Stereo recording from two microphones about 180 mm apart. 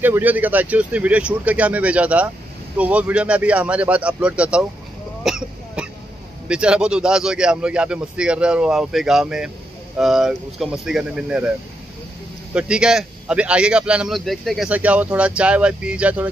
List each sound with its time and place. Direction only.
0.0 s speech: 10° right (ahead or behind)
5.2 s cough: centre (ahead or behind)
6.5 s a man's voice: 5° right (ahead or behind)
12.5 s a man's voice: 5° right (ahead or behind)